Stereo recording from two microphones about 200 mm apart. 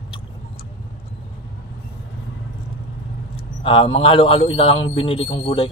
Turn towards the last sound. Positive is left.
turn(degrees=30)  # may be behind; listen again after turning